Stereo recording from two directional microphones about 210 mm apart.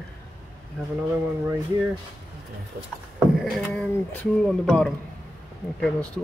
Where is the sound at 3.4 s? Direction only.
Centre (ahead or behind).